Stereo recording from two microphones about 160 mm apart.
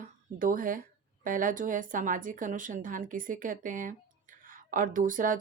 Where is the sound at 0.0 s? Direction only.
60° right (ahead or behind).